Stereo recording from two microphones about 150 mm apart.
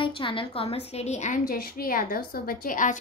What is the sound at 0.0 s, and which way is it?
A woman's voice, 35° left (ahead or behind).